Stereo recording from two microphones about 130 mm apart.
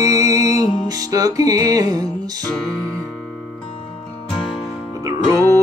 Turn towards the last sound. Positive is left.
turn(degrees=-25)  # may be behind; listen again after turning